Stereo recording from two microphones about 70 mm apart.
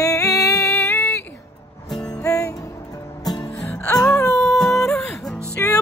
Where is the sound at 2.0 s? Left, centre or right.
Left.